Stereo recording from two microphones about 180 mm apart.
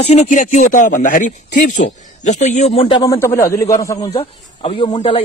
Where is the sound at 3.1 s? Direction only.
15° left (ahead or behind).